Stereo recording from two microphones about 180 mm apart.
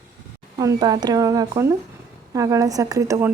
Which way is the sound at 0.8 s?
25° right (ahead or behind).